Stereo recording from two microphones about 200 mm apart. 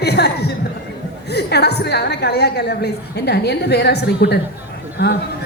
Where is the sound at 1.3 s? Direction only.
55° left (ahead or behind).